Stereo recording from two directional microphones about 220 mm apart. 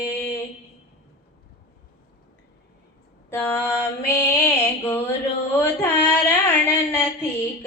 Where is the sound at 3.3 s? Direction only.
10° left (ahead or behind).